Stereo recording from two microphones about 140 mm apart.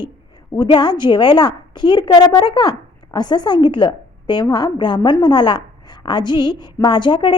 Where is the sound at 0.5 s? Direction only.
30° left (ahead or behind).